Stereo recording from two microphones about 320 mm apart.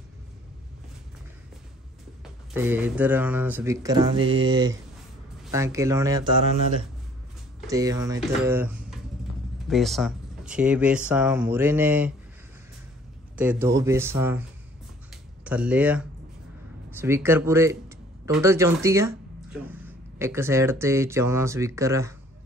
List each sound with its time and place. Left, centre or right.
2.5 s speech: centre
4.2 s speech: right
5.4 s speech: centre
7.6 s speech: centre
13.4 s speech: centre
15.0 s a sound: centre
16.9 s speech: centre